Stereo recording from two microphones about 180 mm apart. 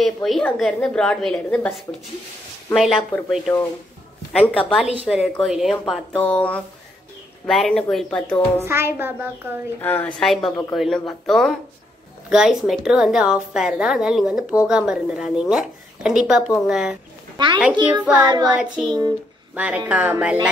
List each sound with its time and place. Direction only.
0.0 s a woman's voice: centre (ahead or behind)
8.6 s speech: 15° right (ahead or behind)
9.8 s a woman's voice: 10° left (ahead or behind)
18.1 s child singing: 20° right (ahead or behind)
18.5 s a woman's voice: 5° right (ahead or behind)
18.9 s child singing: 25° right (ahead or behind)
19.5 s speech: 5° right (ahead or behind)